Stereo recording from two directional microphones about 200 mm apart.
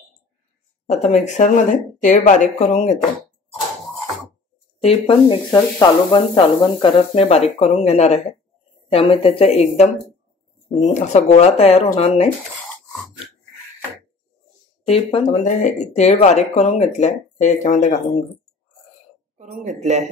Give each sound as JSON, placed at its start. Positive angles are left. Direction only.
{"t": 0.8, "sound": "speech", "side_deg": 35}
{"t": 4.8, "sound": "speech", "side_deg": 25}
{"t": 10.9, "sound": "speech", "side_deg": 35}
{"t": 14.9, "sound": "speech", "side_deg": 30}
{"t": 15.4, "sound": "speech", "side_deg": 40}
{"t": 19.3, "sound": "speech", "side_deg": -35}